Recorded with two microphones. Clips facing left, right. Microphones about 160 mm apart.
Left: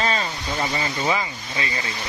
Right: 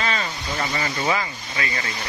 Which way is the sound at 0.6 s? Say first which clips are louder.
Left 1 dB; 25° left (ahead or behind).